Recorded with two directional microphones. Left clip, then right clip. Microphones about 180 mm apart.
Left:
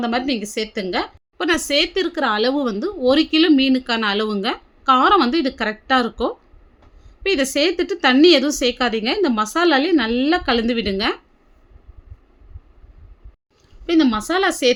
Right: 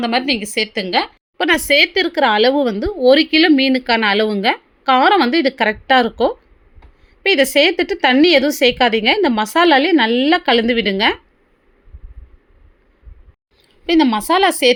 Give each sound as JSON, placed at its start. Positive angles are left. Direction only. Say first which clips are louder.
{"t": 0.0, "sound": "a woman's voice", "louder": "right 4 dB", "side_deg": -10}
{"t": 13.8, "sound": "speech", "louder": "right 3 dB", "side_deg": -15}